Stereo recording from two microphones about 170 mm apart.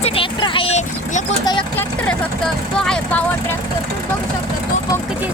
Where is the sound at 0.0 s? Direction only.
30° left (ahead or behind).